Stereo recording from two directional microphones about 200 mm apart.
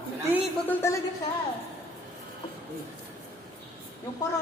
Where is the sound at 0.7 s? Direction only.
15° left (ahead or behind).